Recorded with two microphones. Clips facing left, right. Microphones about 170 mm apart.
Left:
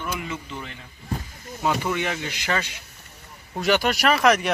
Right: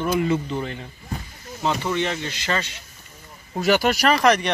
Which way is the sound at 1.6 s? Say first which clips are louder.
Right 1 dB; 10° left (ahead or behind).